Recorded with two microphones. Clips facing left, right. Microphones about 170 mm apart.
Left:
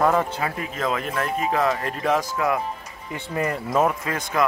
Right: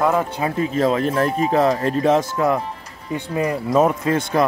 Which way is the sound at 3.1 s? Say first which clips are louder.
Right 4 dB; 15° right (ahead or behind).